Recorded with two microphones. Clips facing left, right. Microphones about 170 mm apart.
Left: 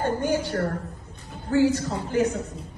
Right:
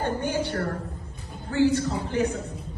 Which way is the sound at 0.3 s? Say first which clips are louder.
Left 2 dB; 40° left (ahead or behind).